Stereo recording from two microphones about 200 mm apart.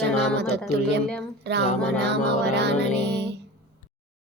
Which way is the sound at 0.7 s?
55° right (ahead or behind).